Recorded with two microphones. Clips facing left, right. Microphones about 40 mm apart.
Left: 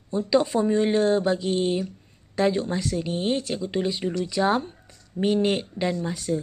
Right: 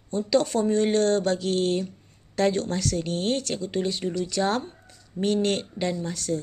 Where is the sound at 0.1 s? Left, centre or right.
Centre.